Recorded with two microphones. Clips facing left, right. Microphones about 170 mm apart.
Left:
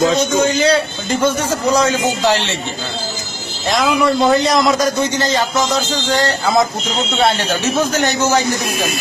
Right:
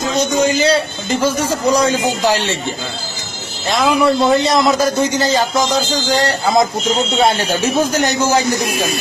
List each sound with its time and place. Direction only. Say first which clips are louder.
0.6 s a man's voice: even; centre (ahead or behind)
2.2 s speech: even; 40° right (ahead or behind)
3.6 s a man's voice: right 1 dB; centre (ahead or behind)